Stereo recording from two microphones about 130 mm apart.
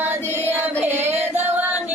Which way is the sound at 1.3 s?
15° right (ahead or behind).